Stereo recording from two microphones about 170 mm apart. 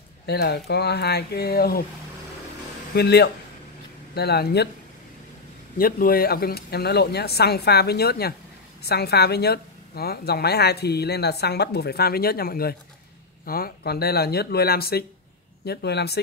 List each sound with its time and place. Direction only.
0.3 s a woman's voice: 75° left (ahead or behind)
2.9 s a woman's voice: 75° left (ahead or behind)
5.8 s a woman's voice: 60° left (ahead or behind)